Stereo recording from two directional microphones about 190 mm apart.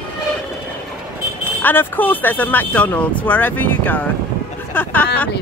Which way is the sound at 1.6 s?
10° left (ahead or behind).